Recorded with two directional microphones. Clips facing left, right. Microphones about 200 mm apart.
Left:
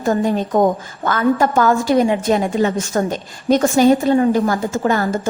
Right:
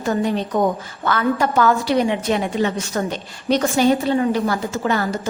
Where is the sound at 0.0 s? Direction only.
45° left (ahead or behind).